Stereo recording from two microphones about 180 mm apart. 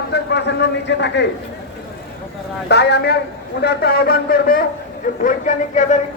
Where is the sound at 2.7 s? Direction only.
70° left (ahead or behind).